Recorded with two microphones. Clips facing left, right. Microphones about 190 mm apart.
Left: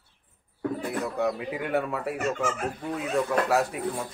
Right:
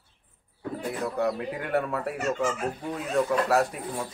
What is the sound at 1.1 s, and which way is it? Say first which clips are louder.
Speech: even; centre (ahead or behind).